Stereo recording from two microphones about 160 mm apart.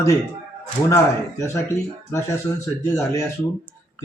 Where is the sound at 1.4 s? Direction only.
15° left (ahead or behind).